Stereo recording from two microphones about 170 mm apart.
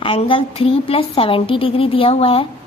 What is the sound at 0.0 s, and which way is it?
A woman's voice, 30° left (ahead or behind).